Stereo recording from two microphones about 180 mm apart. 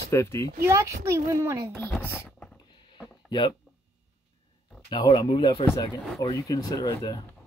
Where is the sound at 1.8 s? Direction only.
5° left (ahead or behind).